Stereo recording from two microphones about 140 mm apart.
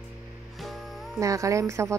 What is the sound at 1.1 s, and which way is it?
Speech, 20° right (ahead or behind).